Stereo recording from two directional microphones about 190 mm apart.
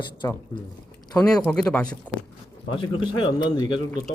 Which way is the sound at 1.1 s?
5° left (ahead or behind).